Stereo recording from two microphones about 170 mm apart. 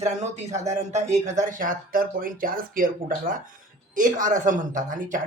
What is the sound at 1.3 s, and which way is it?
Speech, 55° right (ahead or behind).